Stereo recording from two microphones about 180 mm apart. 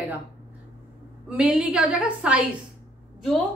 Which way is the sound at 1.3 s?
10° right (ahead or behind).